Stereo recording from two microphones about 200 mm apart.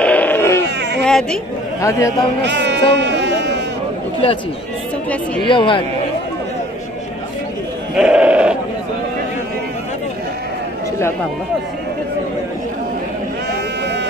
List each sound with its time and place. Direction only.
0.0 s a sound: 10° left (ahead or behind)
0.7 s baby cry: 60° right (ahead or behind)
1.0 s speech: 5° left (ahead or behind)
1.8 s a man's voice: 15° left (ahead or behind)
2.4 s speech: 60° right (ahead or behind)
2.9 s a sound: 60° right (ahead or behind)
5.4 s speech: 25° left (ahead or behind)
7.9 s sheep: 5° right (ahead or behind)